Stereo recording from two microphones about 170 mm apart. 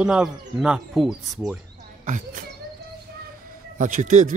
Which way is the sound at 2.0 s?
50° right (ahead or behind).